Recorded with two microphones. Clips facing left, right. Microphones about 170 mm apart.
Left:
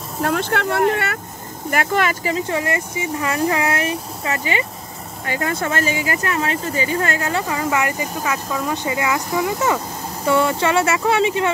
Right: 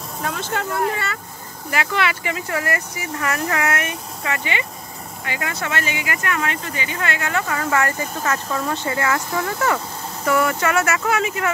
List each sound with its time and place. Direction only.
0.2 s speech: 60° left (ahead or behind)
1.7 s speech: 50° left (ahead or behind)
2.3 s speech: 25° left (ahead or behind)
7.4 s speech: 15° left (ahead or behind)
10.2 s speech: 25° left (ahead or behind)